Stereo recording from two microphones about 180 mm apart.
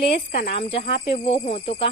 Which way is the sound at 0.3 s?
35° left (ahead or behind).